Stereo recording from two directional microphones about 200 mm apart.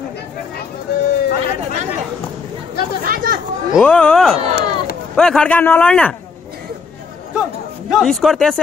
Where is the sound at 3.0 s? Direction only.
45° right (ahead or behind).